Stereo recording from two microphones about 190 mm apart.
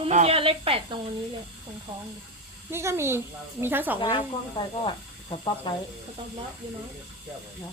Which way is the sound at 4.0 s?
25° left (ahead or behind).